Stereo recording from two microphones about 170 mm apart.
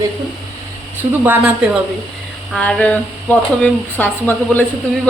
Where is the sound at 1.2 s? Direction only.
10° right (ahead or behind).